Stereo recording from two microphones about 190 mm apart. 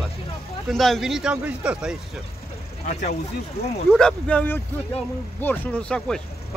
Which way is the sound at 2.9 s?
40° left (ahead or behind).